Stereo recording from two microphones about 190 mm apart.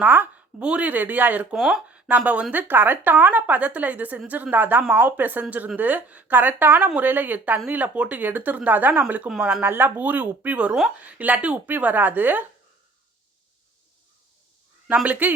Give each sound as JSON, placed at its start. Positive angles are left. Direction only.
{"t": 0.0, "sound": "speech", "side_deg": -10}
{"t": 14.8, "sound": "speech", "side_deg": -5}